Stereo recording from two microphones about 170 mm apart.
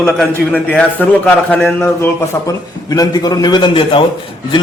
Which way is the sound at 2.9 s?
20° left (ahead or behind).